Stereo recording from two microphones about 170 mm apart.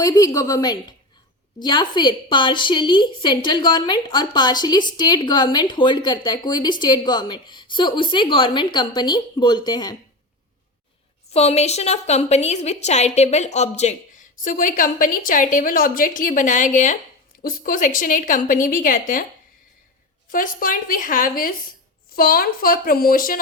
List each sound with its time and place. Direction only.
0.0 s a woman's voice: 20° left (ahead or behind)
11.3 s a woman's voice: 40° left (ahead or behind)
14.4 s a woman's voice: 50° left (ahead or behind)
20.3 s speech: 55° left (ahead or behind)